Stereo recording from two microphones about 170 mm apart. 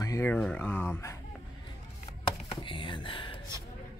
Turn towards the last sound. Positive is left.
turn(degrees=30)  # may be behind; listen again after turning